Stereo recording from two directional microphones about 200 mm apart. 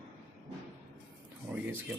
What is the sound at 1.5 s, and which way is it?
Speech, 5° right (ahead or behind).